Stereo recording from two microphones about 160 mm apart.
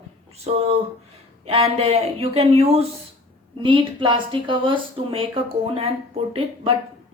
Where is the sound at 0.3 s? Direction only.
40° right (ahead or behind).